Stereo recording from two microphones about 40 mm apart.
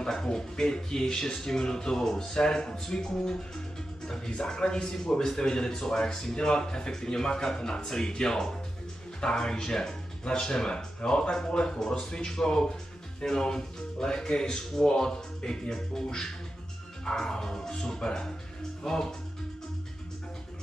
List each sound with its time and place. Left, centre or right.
0.1 s speech: centre
4.4 s speech: centre